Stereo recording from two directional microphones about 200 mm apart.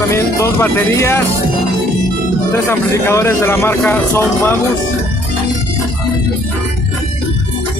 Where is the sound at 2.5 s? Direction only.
15° left (ahead or behind).